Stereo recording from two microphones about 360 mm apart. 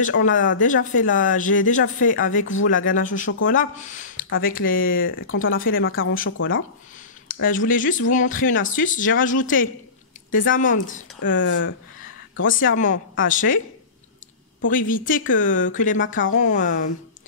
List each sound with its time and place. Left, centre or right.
0.3 s speech: left
7.2 s speech: left
14.7 s speech: left